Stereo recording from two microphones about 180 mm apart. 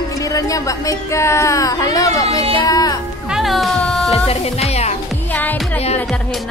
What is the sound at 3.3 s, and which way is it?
Speech, centre (ahead or behind).